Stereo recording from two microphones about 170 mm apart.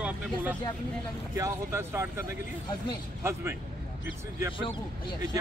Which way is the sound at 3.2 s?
15° right (ahead or behind).